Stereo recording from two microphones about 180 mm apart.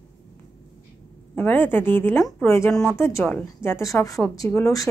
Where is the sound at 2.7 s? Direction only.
5° left (ahead or behind).